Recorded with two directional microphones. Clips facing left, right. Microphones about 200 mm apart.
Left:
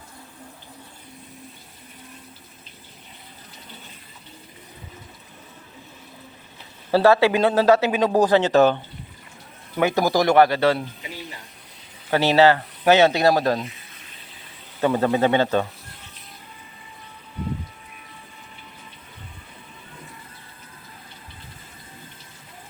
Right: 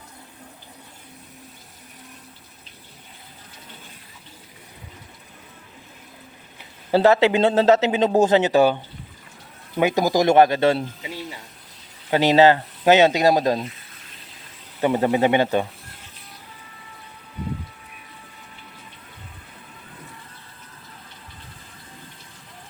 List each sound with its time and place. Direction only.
6.9 s speech: 20° right (ahead or behind)
12.1 s speech: 20° right (ahead or behind)
14.8 s speech: 20° right (ahead or behind)